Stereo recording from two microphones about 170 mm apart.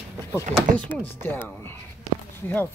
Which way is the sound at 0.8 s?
10° left (ahead or behind).